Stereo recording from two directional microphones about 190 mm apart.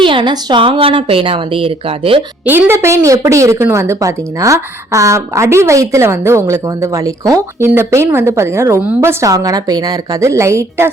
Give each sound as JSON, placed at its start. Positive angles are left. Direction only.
{"t": 0.0, "sound": "speech", "side_deg": -25}
{"t": 2.4, "sound": "a woman's voice", "side_deg": -10}